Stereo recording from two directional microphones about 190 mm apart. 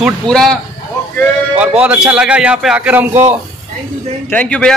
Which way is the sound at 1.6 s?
5° right (ahead or behind).